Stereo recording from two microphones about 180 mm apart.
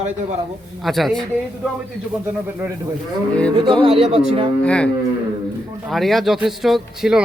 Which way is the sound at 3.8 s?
30° right (ahead or behind).